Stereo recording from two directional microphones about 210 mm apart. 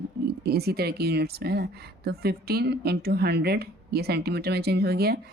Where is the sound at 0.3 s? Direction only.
50° right (ahead or behind).